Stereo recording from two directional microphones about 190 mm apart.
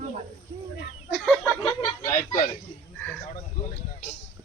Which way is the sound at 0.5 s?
25° right (ahead or behind).